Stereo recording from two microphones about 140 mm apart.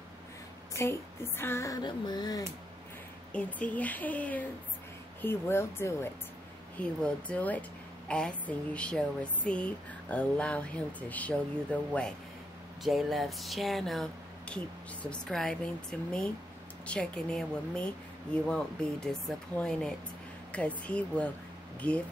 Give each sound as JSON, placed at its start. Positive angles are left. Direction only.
{"t": 0.7, "sound": "speech", "side_deg": 15}
{"t": 3.3, "sound": "speech", "side_deg": 10}
{"t": 15.0, "sound": "speech", "side_deg": 5}